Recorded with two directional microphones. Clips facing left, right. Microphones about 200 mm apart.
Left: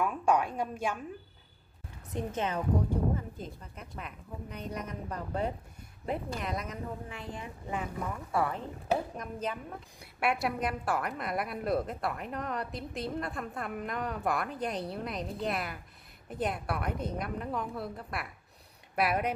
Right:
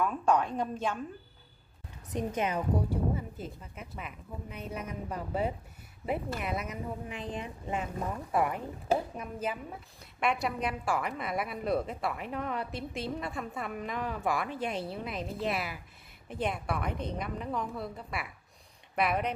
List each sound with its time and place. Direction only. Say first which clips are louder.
0.0 s a woman's voice: even; 10° left (ahead or behind)
2.1 s a woman's voice: right 2 dB; 10° right (ahead or behind)
9.9 s a woman's voice: even; 5° left (ahead or behind)